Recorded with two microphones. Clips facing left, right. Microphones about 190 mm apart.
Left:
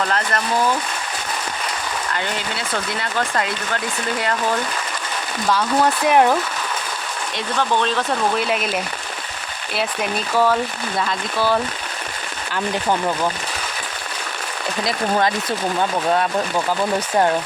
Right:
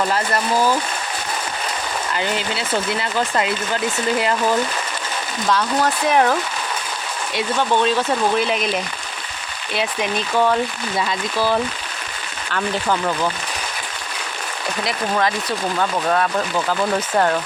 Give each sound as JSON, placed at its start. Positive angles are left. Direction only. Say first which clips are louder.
{"t": 0.0, "sound": "speech", "louder": "right 2 dB", "side_deg": -10}
{"t": 3.0, "sound": "speech", "louder": "right 2 dB", "side_deg": -5}
{"t": 5.5, "sound": "speech", "louder": "left 1 dB", "side_deg": 10}
{"t": 7.3, "sound": "speech", "louder": "right 2 dB", "side_deg": -5}
{"t": 12.5, "sound": "speech", "louder": "even", "side_deg": 15}
{"t": 15.2, "sound": "speech", "louder": "left 1 dB", "side_deg": 25}